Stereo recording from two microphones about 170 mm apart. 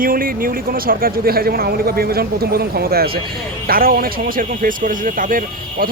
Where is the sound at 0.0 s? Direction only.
55° right (ahead or behind).